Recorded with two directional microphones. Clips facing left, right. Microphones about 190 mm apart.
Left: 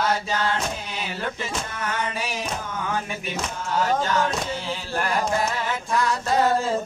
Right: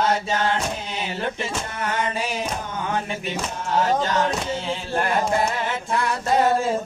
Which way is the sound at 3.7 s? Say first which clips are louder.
Right 2 dB; 25° right (ahead or behind).